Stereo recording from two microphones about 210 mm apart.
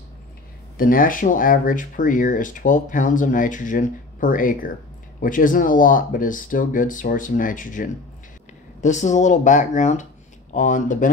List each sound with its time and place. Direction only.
0.7 s speech: 40° left (ahead or behind)